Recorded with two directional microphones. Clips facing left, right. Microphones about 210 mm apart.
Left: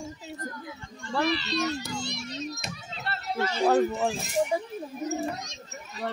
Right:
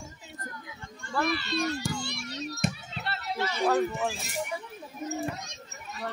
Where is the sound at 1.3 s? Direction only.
50° right (ahead or behind).